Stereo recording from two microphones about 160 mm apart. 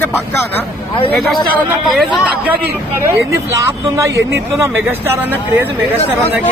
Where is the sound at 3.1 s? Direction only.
20° right (ahead or behind).